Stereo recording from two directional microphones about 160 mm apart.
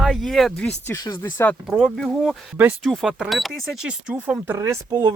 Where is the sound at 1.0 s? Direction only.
25° left (ahead or behind).